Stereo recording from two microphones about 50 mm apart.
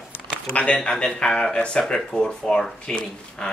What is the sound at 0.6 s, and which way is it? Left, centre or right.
Speech, left.